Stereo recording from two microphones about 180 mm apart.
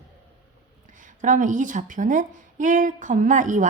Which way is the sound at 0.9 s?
45° right (ahead or behind).